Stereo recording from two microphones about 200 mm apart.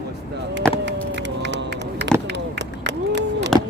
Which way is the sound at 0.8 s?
60° right (ahead or behind).